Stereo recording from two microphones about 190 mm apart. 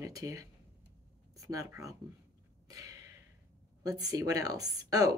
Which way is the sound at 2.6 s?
20° right (ahead or behind).